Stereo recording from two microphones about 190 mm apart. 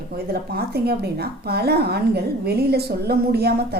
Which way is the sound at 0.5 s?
55° right (ahead or behind).